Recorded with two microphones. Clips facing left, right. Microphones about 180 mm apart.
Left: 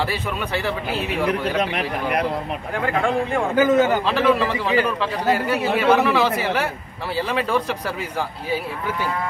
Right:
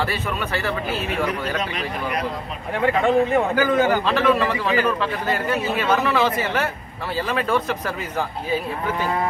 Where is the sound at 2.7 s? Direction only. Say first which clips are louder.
Right 4 dB; centre (ahead or behind).